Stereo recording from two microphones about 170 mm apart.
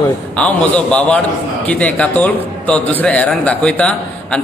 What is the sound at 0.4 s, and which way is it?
A man's voice, 5° left (ahead or behind).